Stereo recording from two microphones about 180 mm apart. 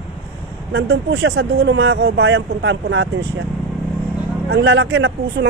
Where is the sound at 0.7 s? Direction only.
70° right (ahead or behind).